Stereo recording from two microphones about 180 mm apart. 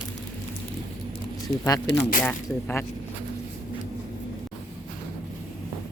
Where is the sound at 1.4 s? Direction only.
20° left (ahead or behind).